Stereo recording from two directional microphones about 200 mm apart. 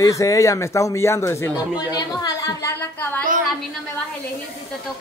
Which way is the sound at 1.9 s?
20° left (ahead or behind).